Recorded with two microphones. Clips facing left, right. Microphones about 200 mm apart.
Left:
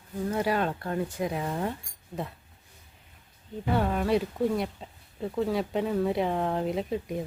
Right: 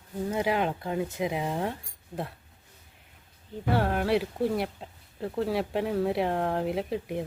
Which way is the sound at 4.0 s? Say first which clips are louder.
Even; 5° right (ahead or behind).